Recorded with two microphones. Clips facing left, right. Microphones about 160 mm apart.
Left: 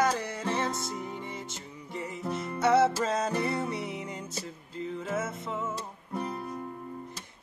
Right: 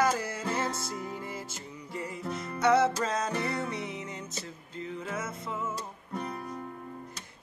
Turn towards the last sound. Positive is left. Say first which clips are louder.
# left 2 dB
turn(degrees=5)  # may be behind; listen again after turning